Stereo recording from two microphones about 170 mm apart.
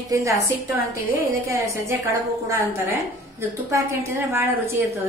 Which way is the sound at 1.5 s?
15° right (ahead or behind).